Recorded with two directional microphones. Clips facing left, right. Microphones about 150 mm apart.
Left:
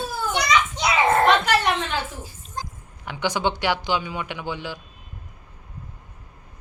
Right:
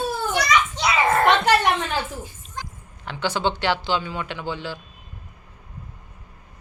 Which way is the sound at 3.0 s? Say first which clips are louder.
Even; 15° left (ahead or behind).